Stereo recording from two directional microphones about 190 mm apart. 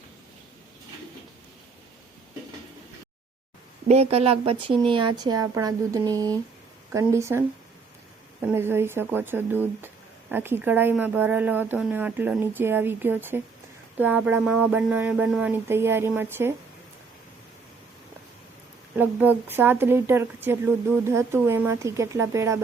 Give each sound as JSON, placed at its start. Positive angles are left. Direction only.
{"t": 3.8, "sound": "speech", "side_deg": -35}
{"t": 18.9, "sound": "speech", "side_deg": -10}